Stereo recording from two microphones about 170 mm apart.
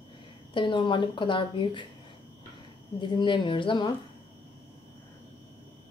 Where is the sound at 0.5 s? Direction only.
30° left (ahead or behind).